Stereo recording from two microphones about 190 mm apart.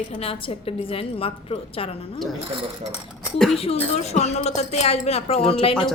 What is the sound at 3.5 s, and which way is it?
A woman's voice, 30° left (ahead or behind).